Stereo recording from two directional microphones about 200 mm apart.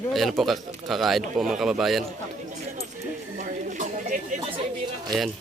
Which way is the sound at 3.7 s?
40° right (ahead or behind).